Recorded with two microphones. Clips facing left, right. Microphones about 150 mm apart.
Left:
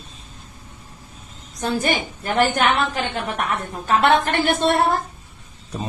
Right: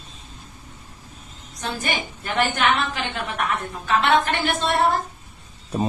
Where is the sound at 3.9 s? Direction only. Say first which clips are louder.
Left 2 dB; 45° left (ahead or behind).